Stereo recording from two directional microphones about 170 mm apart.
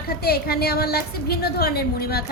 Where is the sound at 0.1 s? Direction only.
65° left (ahead or behind).